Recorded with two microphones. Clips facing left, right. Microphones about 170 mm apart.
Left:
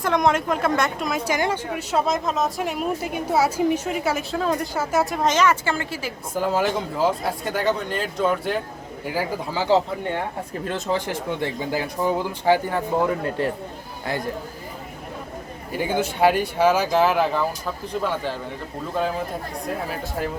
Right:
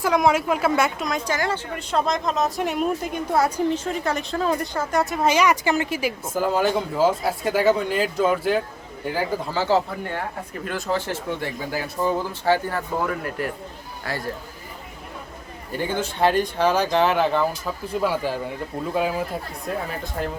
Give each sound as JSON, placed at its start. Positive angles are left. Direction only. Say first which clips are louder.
{"t": 0.0, "sound": "speech", "louder": "right 1 dB", "side_deg": -5}
{"t": 6.3, "sound": "speech", "louder": "even", "side_deg": 0}
{"t": 9.1, "sound": "speech", "louder": "right 1 dB", "side_deg": 15}
{"t": 15.8, "sound": "speech", "louder": "left 2 dB", "side_deg": 10}
{"t": 19.6, "sound": "speech", "louder": "even", "side_deg": 5}